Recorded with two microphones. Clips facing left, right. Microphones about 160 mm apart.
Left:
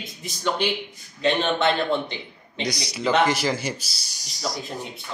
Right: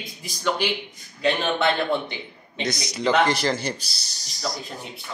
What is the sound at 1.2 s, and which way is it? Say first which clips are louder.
A man's voice: left 1 dB; 10° right (ahead or behind).